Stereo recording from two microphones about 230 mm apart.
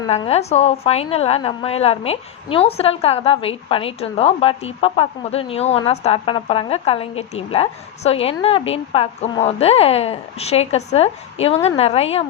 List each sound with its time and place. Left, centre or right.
0.1 s a woman's voice: left